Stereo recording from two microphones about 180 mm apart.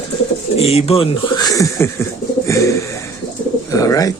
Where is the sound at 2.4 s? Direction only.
15° left (ahead or behind).